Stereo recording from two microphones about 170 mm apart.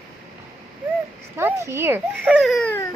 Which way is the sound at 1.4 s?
15° right (ahead or behind).